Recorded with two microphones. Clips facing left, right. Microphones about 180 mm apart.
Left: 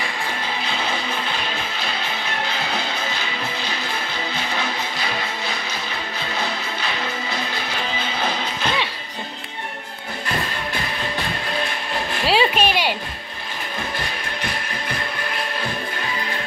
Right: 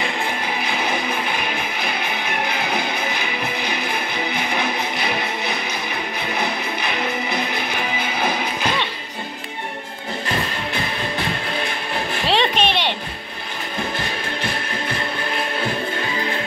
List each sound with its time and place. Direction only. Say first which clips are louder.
0.7 s music: right 3 dB; 15° right (ahead or behind)
12.3 s music: left 1 dB; 5° left (ahead or behind)